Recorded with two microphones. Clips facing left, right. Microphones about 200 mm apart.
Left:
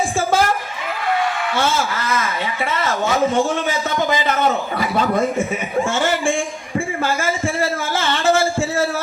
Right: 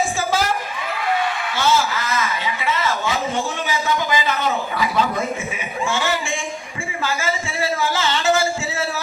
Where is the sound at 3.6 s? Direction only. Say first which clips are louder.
Left 2 dB; 50° left (ahead or behind).